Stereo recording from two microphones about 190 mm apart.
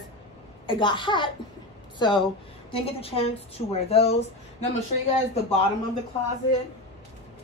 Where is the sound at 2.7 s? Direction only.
30° left (ahead or behind).